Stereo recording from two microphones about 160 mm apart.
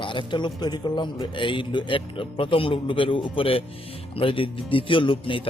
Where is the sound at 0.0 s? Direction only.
30° left (ahead or behind).